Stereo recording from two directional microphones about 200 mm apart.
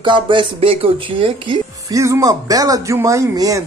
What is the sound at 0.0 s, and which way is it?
Speech, 25° right (ahead or behind).